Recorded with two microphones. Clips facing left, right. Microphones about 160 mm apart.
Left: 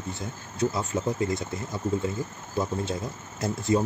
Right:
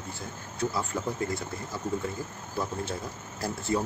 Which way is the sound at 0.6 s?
20° left (ahead or behind).